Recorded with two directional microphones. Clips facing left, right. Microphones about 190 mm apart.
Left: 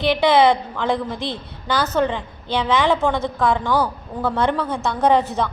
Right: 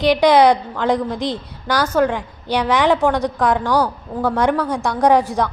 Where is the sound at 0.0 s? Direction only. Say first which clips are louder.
Right 3 dB; 15° right (ahead or behind).